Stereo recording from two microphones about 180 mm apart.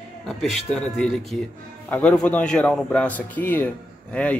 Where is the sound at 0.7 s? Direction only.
Centre (ahead or behind).